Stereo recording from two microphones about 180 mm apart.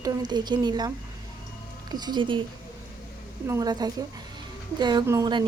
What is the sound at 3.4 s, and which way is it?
A woman's voice, 20° right (ahead or behind).